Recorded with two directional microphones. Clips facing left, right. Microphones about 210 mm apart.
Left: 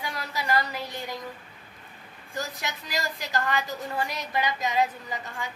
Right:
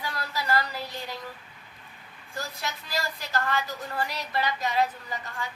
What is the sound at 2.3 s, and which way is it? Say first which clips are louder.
A woman's voice: left 2 dB; 15° left (ahead or behind).